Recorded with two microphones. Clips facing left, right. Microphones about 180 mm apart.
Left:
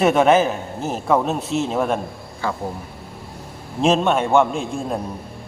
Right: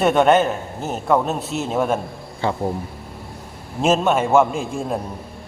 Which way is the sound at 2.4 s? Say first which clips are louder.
Right 3 dB; 25° right (ahead or behind).